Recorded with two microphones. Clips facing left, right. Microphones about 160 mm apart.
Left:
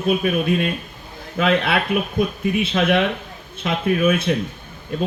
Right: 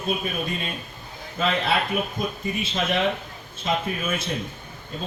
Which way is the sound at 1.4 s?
65° left (ahead or behind).